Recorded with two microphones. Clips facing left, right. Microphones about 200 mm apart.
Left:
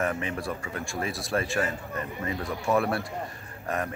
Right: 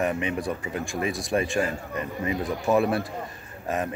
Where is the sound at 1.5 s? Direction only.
20° right (ahead or behind).